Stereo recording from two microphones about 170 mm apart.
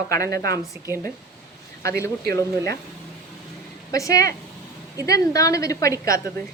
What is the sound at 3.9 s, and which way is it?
Speech, 20° left (ahead or behind).